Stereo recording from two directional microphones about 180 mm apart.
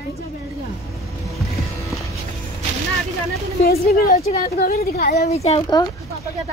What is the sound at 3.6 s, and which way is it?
Speech, 60° left (ahead or behind).